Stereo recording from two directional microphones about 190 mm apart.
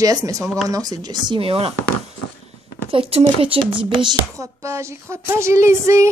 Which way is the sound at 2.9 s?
30° right (ahead or behind).